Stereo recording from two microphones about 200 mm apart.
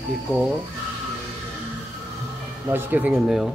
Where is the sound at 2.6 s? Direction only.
10° right (ahead or behind).